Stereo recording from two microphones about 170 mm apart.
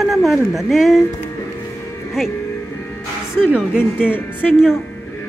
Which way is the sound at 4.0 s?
10° left (ahead or behind).